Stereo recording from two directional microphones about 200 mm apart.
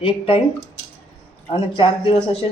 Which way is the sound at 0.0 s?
30° left (ahead or behind).